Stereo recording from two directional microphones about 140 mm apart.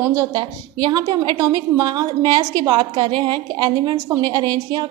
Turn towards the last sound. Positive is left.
turn(degrees=-30)  # may be behind; listen again after turning